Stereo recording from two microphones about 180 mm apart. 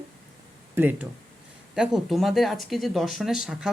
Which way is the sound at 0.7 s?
10° right (ahead or behind).